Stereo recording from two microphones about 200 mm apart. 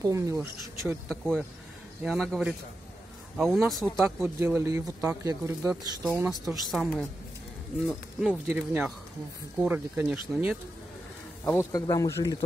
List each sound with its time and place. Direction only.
0.0 s speech: 15° right (ahead or behind)
1.0 s speech: centre (ahead or behind)
4.4 s speech: 15° right (ahead or behind)
11.4 s speech: 15° left (ahead or behind)